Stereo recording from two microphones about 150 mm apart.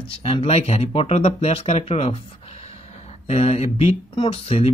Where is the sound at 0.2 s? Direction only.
40° left (ahead or behind).